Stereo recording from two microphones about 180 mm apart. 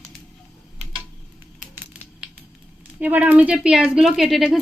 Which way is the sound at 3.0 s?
10° right (ahead or behind).